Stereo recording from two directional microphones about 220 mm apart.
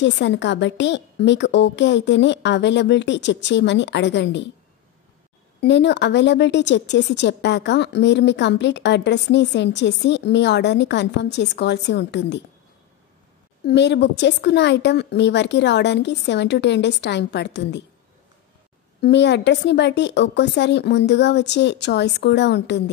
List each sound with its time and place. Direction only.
0.0 s a woman's voice: 55° left (ahead or behind)
5.6 s a woman's voice: 50° left (ahead or behind)
13.7 s a woman's voice: 50° left (ahead or behind)
18.9 s a woman's voice: 50° left (ahead or behind)